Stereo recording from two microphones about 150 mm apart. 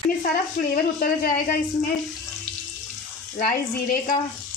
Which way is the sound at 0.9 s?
70° left (ahead or behind).